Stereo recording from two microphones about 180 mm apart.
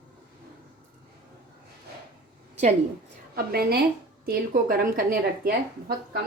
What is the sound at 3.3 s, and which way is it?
A woman's voice, 60° right (ahead or behind).